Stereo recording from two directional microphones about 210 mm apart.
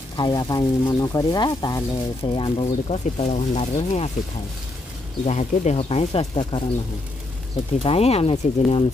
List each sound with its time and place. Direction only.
0.2 s speech: 20° left (ahead or behind)
5.2 s speech: 35° left (ahead or behind)
7.8 s speech: 30° left (ahead or behind)